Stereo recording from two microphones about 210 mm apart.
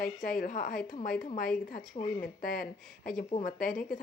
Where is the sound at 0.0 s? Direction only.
40° left (ahead or behind).